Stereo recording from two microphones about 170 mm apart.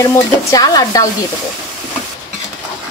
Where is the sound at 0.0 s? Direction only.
20° left (ahead or behind).